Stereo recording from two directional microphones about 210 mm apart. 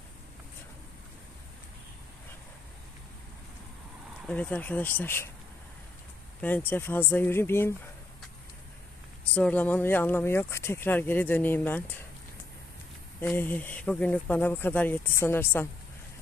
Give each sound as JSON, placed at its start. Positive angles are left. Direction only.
{"t": 4.3, "sound": "speech", "side_deg": 5}
{"t": 6.7, "sound": "speech", "side_deg": 10}
{"t": 9.3, "sound": "speech", "side_deg": 5}
{"t": 13.1, "sound": "speech", "side_deg": 10}